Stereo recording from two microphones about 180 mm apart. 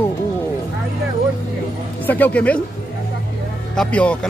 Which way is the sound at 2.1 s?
10° left (ahead or behind).